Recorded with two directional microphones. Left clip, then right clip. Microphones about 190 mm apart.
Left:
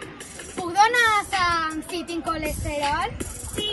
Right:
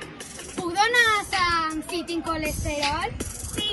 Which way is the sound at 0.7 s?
15° left (ahead or behind).